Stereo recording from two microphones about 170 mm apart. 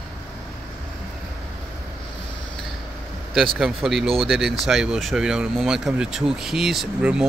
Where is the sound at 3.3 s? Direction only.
Centre (ahead or behind).